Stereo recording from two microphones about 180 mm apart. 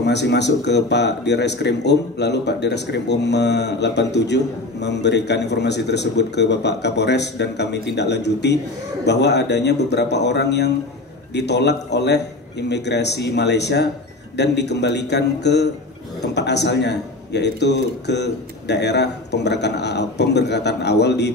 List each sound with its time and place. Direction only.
0.0 s a man's voice: 70° left (ahead or behind)